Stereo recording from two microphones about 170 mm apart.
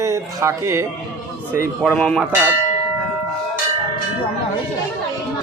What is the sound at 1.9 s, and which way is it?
Speech, 5° left (ahead or behind).